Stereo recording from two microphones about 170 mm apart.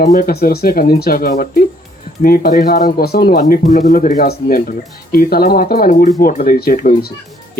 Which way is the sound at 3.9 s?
45° left (ahead or behind).